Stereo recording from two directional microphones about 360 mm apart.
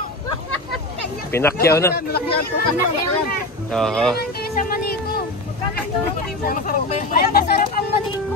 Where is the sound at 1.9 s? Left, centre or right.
Left.